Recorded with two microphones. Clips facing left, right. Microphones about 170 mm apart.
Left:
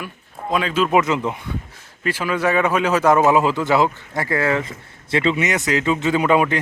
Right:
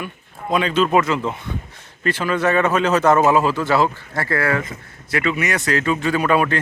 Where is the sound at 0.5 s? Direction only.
5° left (ahead or behind).